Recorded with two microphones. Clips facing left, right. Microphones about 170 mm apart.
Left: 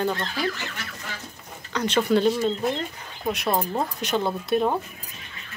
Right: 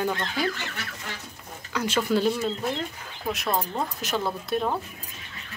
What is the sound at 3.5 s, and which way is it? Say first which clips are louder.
Speech: left 3 dB; 10° left (ahead or behind).